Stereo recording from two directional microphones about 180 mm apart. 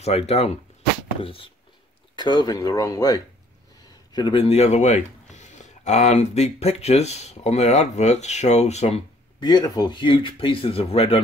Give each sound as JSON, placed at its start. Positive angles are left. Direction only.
{"t": 0.0, "sound": "speech", "side_deg": 35}
{"t": 9.4, "sound": "speech", "side_deg": 25}